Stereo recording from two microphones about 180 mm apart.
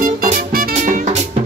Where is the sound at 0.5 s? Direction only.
55° right (ahead or behind).